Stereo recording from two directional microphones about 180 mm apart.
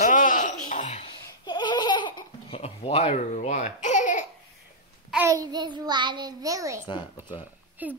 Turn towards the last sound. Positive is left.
turn(degrees=-10)  # may be behind; listen again after turning